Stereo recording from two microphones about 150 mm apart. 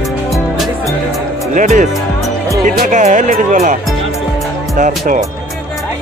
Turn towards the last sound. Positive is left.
turn(degrees=-60)  # may be behind; listen again after turning